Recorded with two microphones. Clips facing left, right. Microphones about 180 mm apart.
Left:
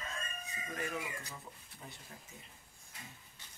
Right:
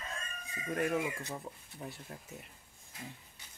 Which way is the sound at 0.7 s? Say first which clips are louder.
Right 8 dB; 60° right (ahead or behind).